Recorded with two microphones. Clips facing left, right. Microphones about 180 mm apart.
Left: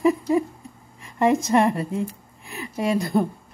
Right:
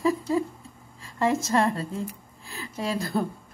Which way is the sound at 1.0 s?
20° left (ahead or behind).